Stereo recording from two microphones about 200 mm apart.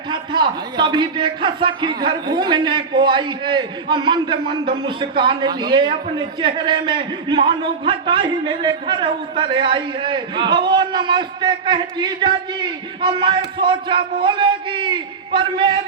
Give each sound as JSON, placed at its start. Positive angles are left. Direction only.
{"t": 0.1, "sound": "a man's voice", "side_deg": -20}